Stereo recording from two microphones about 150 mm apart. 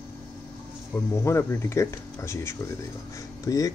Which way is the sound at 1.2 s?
20° left (ahead or behind).